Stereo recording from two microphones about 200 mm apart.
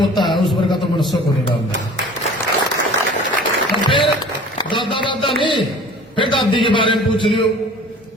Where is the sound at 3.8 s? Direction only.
25° left (ahead or behind).